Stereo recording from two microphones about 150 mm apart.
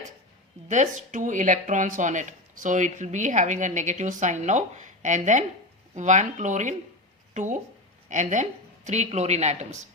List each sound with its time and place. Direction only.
0.7 s a woman's voice: 55° right (ahead or behind)